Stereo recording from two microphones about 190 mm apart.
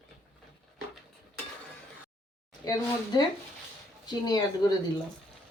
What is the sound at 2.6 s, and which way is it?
Speech, 20° left (ahead or behind).